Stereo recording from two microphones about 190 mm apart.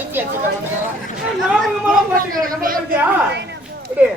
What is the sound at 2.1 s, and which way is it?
Speech, 45° right (ahead or behind).